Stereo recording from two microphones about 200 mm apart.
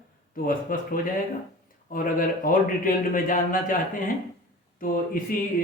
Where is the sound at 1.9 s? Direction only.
45° left (ahead or behind).